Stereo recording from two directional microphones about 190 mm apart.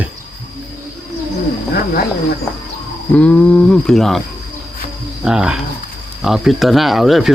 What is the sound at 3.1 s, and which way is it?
Speech, 5° left (ahead or behind).